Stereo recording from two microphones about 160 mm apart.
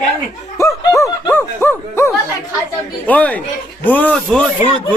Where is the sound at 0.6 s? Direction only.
20° left (ahead or behind).